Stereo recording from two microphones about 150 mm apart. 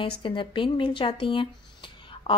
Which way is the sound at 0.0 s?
35° left (ahead or behind).